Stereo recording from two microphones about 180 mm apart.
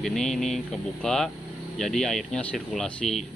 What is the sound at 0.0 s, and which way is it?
Speech, centre (ahead or behind).